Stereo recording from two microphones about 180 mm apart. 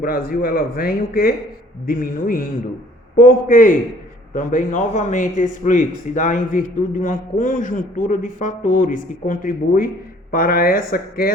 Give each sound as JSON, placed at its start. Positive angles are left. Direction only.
{"t": 0.0, "sound": "a man's voice", "side_deg": 55}